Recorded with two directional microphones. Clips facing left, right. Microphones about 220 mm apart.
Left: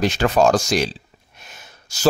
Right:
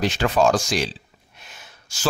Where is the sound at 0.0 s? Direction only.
45° left (ahead or behind).